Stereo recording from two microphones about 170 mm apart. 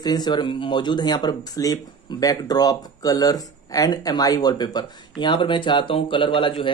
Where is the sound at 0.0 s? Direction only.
25° left (ahead or behind).